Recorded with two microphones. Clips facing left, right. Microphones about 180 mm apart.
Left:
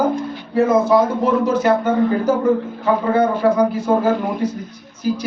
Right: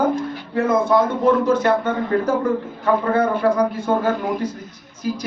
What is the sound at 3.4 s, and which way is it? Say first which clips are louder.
Speech: left 3 dB; 5° left (ahead or behind).